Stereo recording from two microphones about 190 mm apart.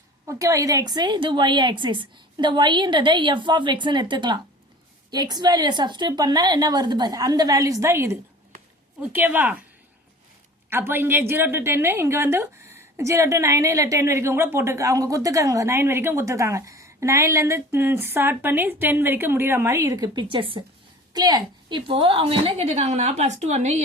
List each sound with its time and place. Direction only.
0.3 s a woman's voice: 15° right (ahead or behind)
10.7 s a woman's voice: 10° right (ahead or behind); by 23.8 s 35° right (ahead or behind)